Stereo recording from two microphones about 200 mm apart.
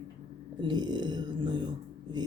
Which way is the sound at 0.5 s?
20° right (ahead or behind).